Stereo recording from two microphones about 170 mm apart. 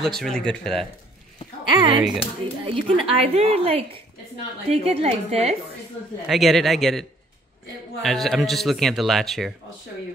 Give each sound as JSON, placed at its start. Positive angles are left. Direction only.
{"t": 0.0, "sound": "speech", "side_deg": 5}
{"t": 1.7, "sound": "speech", "side_deg": -30}
{"t": 6.2, "sound": "speech", "side_deg": 0}